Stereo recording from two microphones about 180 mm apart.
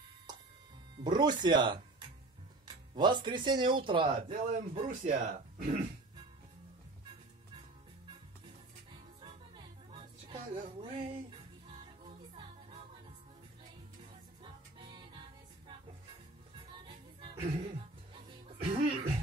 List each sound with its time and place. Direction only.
1.0 s speech: 25° right (ahead or behind)
4.3 s speech: 40° right (ahead or behind)
9.9 s music: 30° right (ahead or behind)
14.4 s music: 25° right (ahead or behind)
16.5 s music: 25° right (ahead or behind)